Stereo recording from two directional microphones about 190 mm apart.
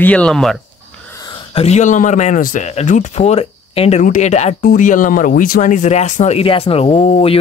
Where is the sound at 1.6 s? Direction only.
35° left (ahead or behind).